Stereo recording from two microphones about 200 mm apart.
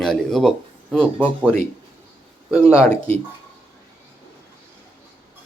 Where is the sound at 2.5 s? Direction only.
5° left (ahead or behind).